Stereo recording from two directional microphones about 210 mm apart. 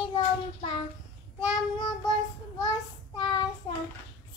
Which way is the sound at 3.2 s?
20° left (ahead or behind).